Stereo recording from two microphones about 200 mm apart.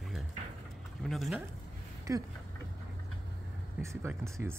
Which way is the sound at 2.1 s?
15° right (ahead or behind).